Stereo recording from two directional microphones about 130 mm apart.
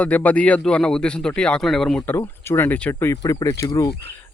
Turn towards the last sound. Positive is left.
turn(degrees=25)  # may be behind; listen again after turning